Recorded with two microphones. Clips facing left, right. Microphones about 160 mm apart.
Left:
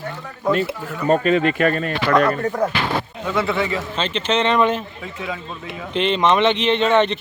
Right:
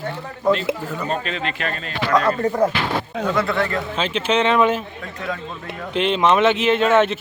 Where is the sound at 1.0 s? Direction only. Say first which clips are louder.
Left 10 dB; 50° left (ahead or behind).